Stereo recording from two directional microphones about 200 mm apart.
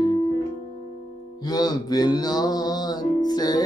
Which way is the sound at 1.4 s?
20° left (ahead or behind).